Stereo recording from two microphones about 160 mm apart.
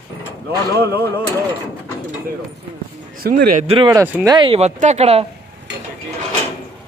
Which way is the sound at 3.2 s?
65° right (ahead or behind).